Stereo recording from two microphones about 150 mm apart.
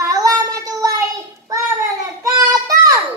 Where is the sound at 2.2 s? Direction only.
25° right (ahead or behind).